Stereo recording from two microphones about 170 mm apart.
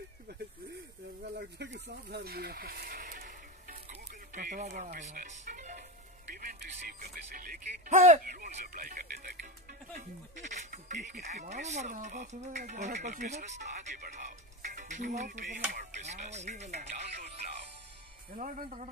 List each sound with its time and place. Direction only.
0.3 s a sound: 75° right (ahead or behind)
1.2 s sheep: 75° right (ahead or behind); by 5.9 s 45° right (ahead or behind)
6.3 s speech: 55° right (ahead or behind)